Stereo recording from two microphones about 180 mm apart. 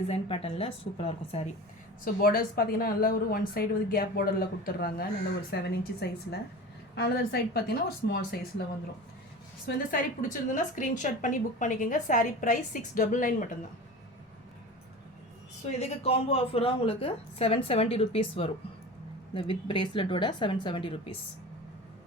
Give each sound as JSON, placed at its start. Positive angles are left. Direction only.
{"t": 0.1, "sound": "a woman's voice", "side_deg": 35}
{"t": 2.0, "sound": "a woman's voice", "side_deg": 55}
{"t": 9.6, "sound": "a woman's voice", "side_deg": 50}
{"t": 15.8, "sound": "a woman's voice", "side_deg": 35}